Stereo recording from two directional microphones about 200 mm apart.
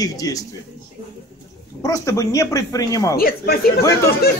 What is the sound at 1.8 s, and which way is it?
Speech, 15° left (ahead or behind).